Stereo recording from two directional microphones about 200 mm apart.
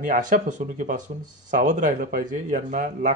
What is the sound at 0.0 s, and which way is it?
Speech, 40° right (ahead or behind).